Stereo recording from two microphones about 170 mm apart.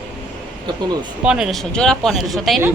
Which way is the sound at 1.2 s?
5° right (ahead or behind).